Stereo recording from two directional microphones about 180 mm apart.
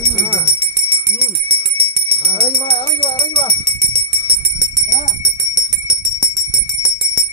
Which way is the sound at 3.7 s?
30° right (ahead or behind).